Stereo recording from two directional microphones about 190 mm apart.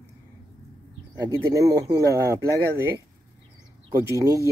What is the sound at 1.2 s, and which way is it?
Speech, 20° right (ahead or behind).